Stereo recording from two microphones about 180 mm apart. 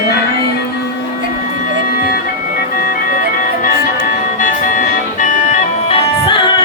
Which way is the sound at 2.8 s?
50° left (ahead or behind).